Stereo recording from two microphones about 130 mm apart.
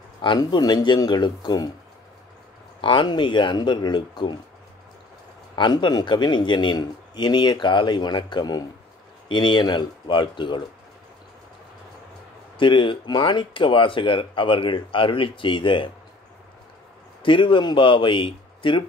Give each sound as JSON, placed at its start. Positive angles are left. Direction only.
{"t": 0.2, "sound": "speech", "side_deg": 35}
{"t": 2.8, "sound": "speech", "side_deg": 35}
{"t": 5.6, "sound": "speech", "side_deg": 35}
{"t": 12.5, "sound": "speech", "side_deg": 40}
{"t": 17.2, "sound": "speech", "side_deg": 40}